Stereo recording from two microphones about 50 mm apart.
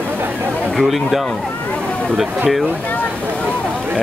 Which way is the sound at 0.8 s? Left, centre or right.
Centre.